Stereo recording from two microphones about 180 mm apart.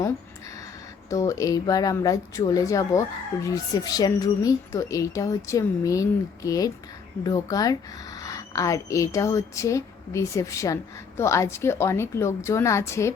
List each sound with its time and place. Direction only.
1.1 s a woman's voice: 20° left (ahead or behind)